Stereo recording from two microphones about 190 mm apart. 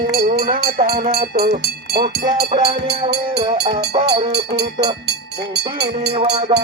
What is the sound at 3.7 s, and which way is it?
Speech, 35° right (ahead or behind).